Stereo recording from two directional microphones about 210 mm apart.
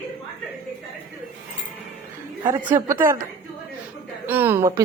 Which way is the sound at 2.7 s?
15° right (ahead or behind).